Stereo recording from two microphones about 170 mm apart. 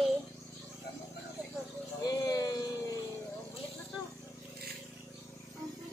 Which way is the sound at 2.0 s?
20° left (ahead or behind).